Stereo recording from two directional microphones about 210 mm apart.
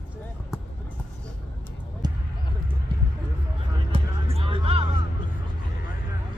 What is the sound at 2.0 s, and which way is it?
Basketball bounce, 20° right (ahead or behind).